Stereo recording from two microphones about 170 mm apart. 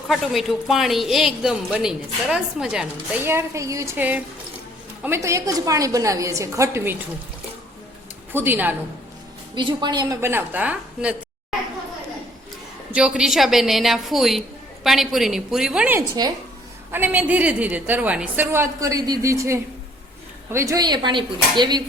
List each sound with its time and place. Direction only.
0.1 s a woman's voice: centre (ahead or behind); by 6.9 s 15° right (ahead or behind)
8.3 s a woman's voice: 10° right (ahead or behind)
9.6 s a woman's voice: 25° right (ahead or behind); by 11.1 s 10° right (ahead or behind)
12.9 s a woman's voice: 5° right (ahead or behind); by 21.8 s 25° right (ahead or behind)